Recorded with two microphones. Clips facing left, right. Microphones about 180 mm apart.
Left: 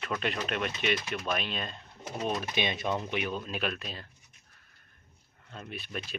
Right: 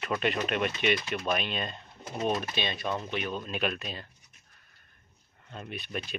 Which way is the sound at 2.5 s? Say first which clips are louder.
Left 1 dB; 15° left (ahead or behind).